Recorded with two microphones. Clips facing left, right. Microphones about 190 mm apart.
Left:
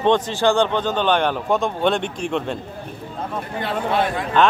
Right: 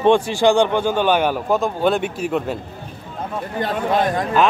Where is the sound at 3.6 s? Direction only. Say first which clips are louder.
Right 2 dB; 40° right (ahead or behind).